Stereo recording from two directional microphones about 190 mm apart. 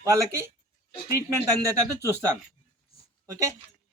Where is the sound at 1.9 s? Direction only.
15° right (ahead or behind).